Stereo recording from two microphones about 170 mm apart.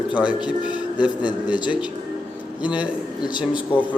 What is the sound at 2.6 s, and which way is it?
Speech, 10° right (ahead or behind).